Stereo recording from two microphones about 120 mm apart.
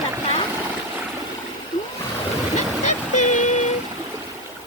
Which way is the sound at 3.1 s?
80° left.